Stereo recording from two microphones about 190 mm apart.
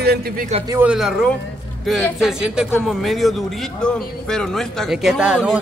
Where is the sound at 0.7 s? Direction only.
10° right (ahead or behind).